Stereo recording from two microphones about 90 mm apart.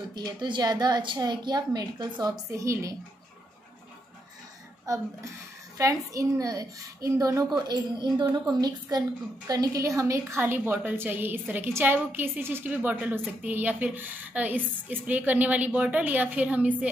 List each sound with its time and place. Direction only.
0.1 s a woman's voice: 55° right (ahead or behind)
2.5 s a woman's voice: 35° right (ahead or behind)
5.8 s a woman's voice: 40° right (ahead or behind); by 16.7 s 15° right (ahead or behind)